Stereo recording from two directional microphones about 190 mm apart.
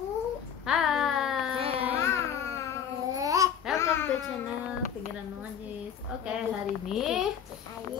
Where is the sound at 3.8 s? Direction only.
15° left (ahead or behind).